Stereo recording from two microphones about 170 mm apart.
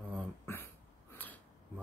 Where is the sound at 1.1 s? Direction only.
10° left (ahead or behind).